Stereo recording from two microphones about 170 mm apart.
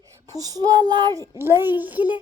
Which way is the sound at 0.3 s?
20° right (ahead or behind).